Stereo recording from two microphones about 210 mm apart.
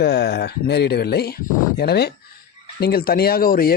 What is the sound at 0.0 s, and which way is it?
A man's voice, 50° left (ahead or behind).